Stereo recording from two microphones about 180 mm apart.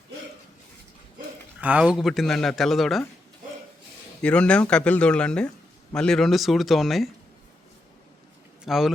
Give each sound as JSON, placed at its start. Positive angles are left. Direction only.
{"t": 1.6, "sound": "speech", "side_deg": -5}
{"t": 4.2, "sound": "speech", "side_deg": 5}
{"t": 8.6, "sound": "speech", "side_deg": 0}